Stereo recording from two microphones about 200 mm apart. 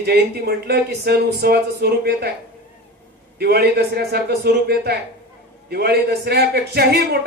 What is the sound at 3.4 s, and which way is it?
A man's voice, 55° right (ahead or behind).